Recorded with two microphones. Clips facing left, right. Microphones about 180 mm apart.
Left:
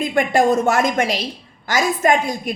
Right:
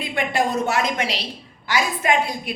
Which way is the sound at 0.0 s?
45° left (ahead or behind).